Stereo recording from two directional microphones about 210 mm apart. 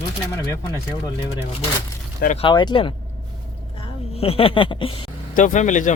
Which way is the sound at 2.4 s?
20° left (ahead or behind).